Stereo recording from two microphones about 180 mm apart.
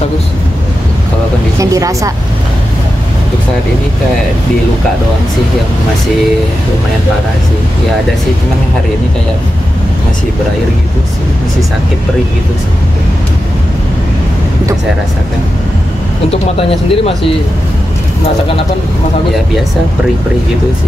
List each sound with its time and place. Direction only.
1.6 s a woman's voice: 20° right (ahead or behind)
16.3 s speech: 30° left (ahead or behind)